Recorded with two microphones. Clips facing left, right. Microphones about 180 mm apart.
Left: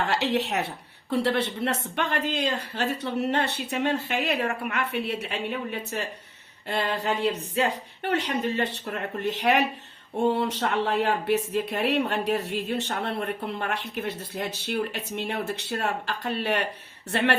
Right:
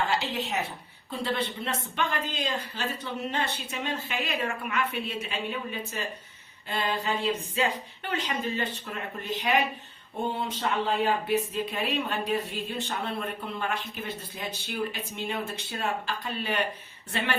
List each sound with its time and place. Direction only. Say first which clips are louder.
0.0 s a woman's voice: left 4 dB; 70° left (ahead or behind)